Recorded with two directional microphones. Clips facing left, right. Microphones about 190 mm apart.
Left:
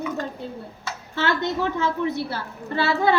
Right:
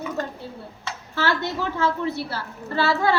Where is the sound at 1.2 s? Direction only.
20° left (ahead or behind).